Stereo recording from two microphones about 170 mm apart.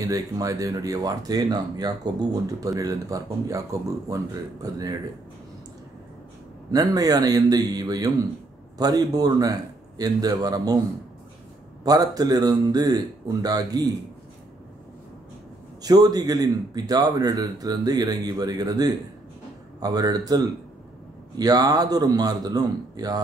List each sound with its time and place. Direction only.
0.0 s speech: 20° right (ahead or behind)
6.7 s speech: 20° right (ahead or behind)
11.8 s speech: 20° right (ahead or behind)
15.8 s speech: 20° right (ahead or behind)